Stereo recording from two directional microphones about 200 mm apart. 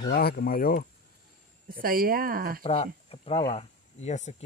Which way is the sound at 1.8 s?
45° right (ahead or behind).